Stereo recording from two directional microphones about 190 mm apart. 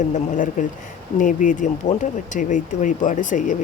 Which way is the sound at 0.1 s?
45° left (ahead or behind).